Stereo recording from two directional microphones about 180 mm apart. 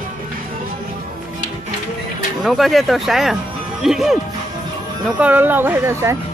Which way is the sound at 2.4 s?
Centre (ahead or behind).